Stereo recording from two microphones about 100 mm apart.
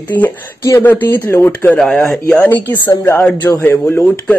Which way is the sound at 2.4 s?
15° left (ahead or behind).